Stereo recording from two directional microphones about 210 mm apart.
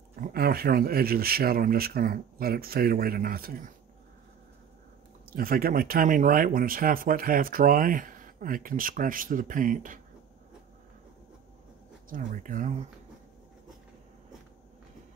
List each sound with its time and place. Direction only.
0.1 s speech: 45° right (ahead or behind)
5.3 s speech: 45° right (ahead or behind)
12.1 s speech: 40° right (ahead or behind)